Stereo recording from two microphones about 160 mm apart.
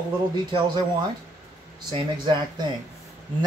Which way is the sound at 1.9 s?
30° right (ahead or behind).